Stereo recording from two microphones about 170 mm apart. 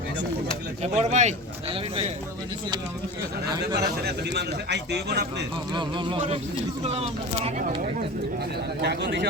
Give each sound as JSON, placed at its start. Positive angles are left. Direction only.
{"t": 0.8, "sound": "speech", "side_deg": -45}
{"t": 3.8, "sound": "a man's voice", "side_deg": -75}
{"t": 5.7, "sound": "speech", "side_deg": -30}
{"t": 8.8, "sound": "speech", "side_deg": -75}